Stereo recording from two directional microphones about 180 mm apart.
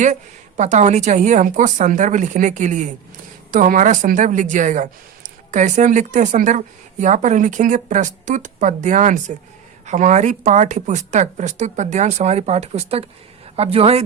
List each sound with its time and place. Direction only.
0.0 s a woman's voice: 40° right (ahead or behind)